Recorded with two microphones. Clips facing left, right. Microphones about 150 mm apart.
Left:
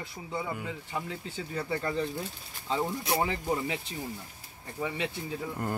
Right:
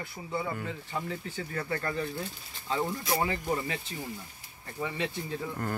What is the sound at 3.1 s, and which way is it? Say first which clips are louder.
Speech: left 1 dB; 15° left (ahead or behind).